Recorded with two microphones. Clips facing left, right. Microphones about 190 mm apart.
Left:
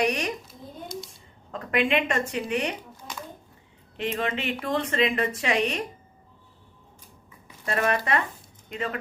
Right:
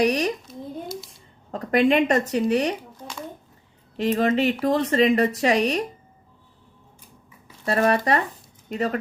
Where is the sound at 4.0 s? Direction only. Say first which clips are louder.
Right 8 dB; 40° right (ahead or behind).